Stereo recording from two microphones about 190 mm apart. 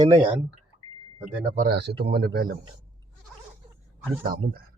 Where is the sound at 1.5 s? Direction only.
55° right (ahead or behind).